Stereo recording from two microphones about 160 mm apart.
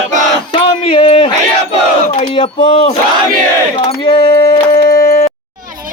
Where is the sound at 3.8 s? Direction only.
35° left (ahead or behind).